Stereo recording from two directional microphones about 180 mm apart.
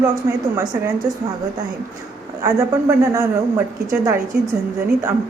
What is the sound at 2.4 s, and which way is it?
A woman's voice, 15° right (ahead or behind).